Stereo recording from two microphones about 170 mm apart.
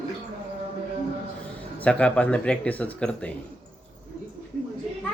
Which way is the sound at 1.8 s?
5° left (ahead or behind).